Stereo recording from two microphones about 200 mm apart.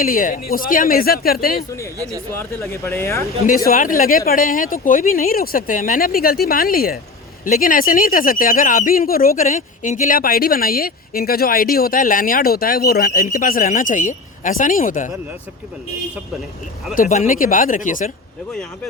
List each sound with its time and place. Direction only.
0.0 s speech: 45° left (ahead or behind)
2.0 s speech: 15° right (ahead or behind)
2.3 s speech: 10° left (ahead or behind)
3.7 s speech: 45° left (ahead or behind)
16.9 s speech: 40° left (ahead or behind)